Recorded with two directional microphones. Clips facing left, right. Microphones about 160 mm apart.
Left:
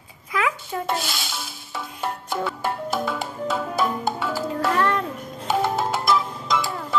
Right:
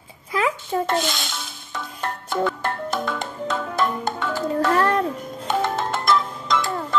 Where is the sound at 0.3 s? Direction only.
30° right (ahead or behind).